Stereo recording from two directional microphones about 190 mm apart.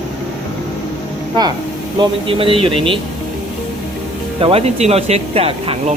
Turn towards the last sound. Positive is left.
turn(degrees=-30)  # may be behind; listen again after turning